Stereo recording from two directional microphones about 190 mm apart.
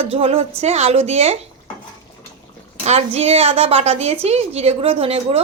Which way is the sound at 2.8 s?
35° right (ahead or behind).